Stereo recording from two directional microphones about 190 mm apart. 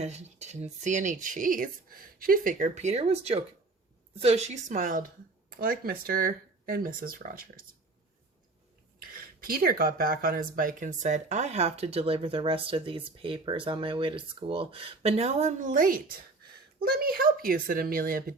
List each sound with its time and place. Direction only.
0.0 s speech: 35° right (ahead or behind)
9.1 s speech: 50° right (ahead or behind)